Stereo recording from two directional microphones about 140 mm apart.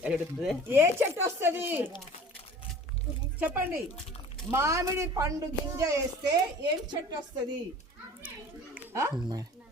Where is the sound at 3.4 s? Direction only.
10° right (ahead or behind).